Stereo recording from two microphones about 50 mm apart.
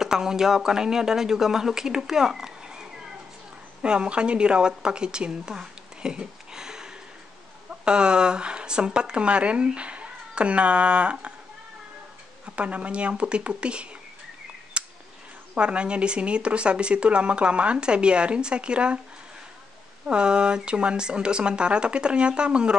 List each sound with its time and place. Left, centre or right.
0.0 s a woman's voice: centre
12.5 s speech: right
14.8 s a sound: right
15.5 s speech: right
20.1 s speech: centre